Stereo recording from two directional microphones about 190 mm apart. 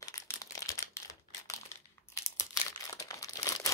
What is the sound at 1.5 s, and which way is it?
Crumpling, 15° left (ahead or behind).